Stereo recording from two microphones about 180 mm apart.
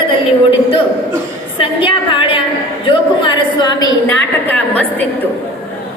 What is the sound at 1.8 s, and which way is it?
A woman's voice, 30° left (ahead or behind).